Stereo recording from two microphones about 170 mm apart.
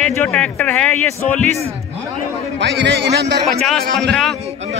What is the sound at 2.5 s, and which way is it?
Speech, 85° right.